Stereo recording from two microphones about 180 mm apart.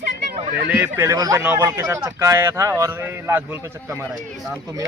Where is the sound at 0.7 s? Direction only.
10° right (ahead or behind).